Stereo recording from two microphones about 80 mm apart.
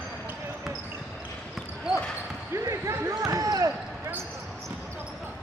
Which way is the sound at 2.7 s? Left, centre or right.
Right.